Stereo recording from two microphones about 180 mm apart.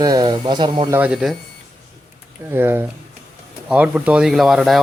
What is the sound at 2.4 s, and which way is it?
Speech, 10° right (ahead or behind).